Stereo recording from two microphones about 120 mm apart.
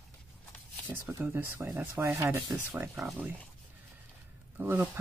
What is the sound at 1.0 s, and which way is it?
Speech, 15° right (ahead or behind).